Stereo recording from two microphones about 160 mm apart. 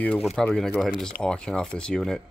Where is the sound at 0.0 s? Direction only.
5° left (ahead or behind).